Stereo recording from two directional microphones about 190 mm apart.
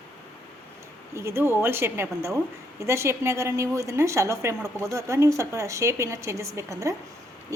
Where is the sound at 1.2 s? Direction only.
15° right (ahead or behind).